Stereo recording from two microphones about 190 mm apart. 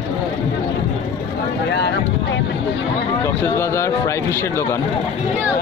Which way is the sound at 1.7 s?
65° left (ahead or behind).